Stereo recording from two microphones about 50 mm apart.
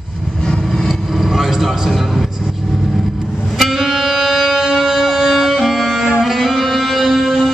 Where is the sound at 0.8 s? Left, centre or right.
Centre.